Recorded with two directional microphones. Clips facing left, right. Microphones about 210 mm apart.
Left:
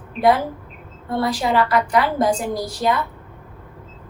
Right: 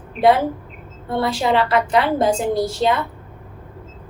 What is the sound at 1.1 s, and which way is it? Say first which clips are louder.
A woman's voice: right 1 dB; 25° right (ahead or behind).